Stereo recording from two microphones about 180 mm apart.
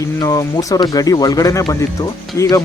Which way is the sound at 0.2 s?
20° left (ahead or behind).